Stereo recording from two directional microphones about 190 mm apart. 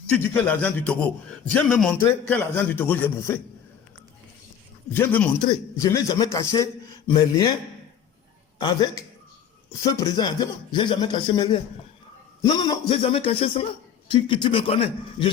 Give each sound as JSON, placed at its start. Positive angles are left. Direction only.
{"t": 0.1, "sound": "a man's voice", "side_deg": 10}
{"t": 4.9, "sound": "a man's voice", "side_deg": 10}
{"t": 8.5, "sound": "speech", "side_deg": 20}
{"t": 13.0, "sound": "music", "side_deg": 30}
{"t": 14.1, "sound": "speech", "side_deg": 25}